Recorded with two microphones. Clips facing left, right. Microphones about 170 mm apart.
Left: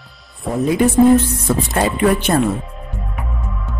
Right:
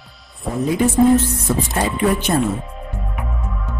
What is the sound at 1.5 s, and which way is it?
Speech, 80° left.